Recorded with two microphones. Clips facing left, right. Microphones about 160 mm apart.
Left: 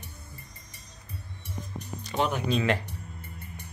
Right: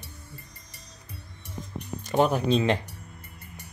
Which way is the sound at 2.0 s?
50° right (ahead or behind).